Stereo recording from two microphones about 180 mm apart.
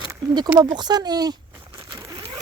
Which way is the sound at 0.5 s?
25° right (ahead or behind).